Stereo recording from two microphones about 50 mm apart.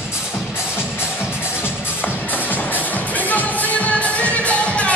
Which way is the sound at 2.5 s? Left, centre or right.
Left.